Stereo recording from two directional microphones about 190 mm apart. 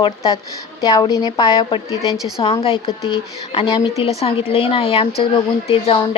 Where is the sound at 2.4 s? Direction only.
30° left (ahead or behind).